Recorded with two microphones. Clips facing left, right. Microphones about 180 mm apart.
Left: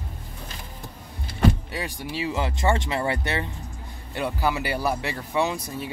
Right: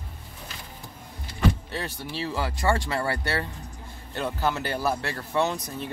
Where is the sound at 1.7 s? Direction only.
15° left (ahead or behind).